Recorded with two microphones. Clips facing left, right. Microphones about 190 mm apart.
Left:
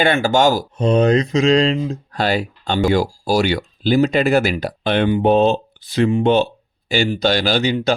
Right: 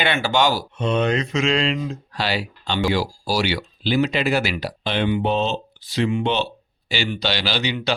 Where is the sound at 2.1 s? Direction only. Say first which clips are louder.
Left 6 dB; 50° left (ahead or behind).